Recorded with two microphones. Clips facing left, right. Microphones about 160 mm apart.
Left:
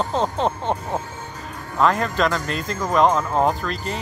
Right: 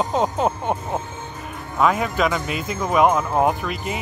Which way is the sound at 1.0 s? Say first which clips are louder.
Even; 25° right (ahead or behind).